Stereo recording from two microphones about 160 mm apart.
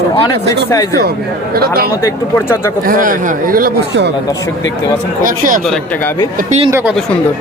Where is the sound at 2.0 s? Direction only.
15° left (ahead or behind).